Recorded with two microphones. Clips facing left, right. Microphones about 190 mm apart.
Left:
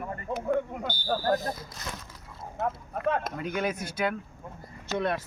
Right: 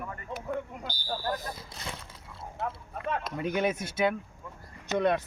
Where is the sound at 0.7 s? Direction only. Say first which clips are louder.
Left 6 dB; 55° left (ahead or behind).